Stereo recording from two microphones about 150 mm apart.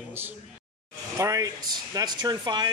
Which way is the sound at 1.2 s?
20° right (ahead or behind).